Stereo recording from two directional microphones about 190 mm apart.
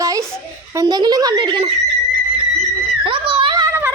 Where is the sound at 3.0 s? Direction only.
25° right (ahead or behind).